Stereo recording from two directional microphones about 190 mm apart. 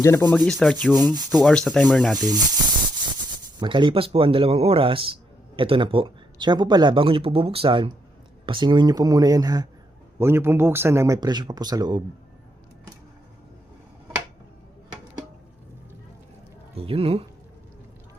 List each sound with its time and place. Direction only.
0.0 s sanding: 15° left (ahead or behind)
0.3 s speech: 5° left (ahead or behind)
2.1 s a man's voice: 20° right (ahead or behind)
3.6 s a man's voice: 25° right (ahead or behind)
16.7 s speech: 30° right (ahead or behind)